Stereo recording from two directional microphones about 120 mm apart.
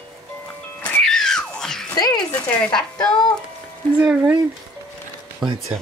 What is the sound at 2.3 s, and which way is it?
Speech, 5° left (ahead or behind).